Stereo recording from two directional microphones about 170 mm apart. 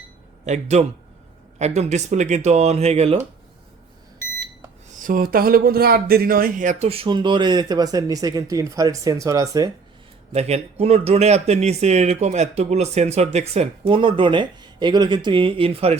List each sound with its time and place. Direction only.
0.4 s a man's voice: 45° right (ahead or behind)
4.9 s speech: 50° right (ahead or behind); by 9.6 s 20° right (ahead or behind)
10.3 s speech: 40° right (ahead or behind)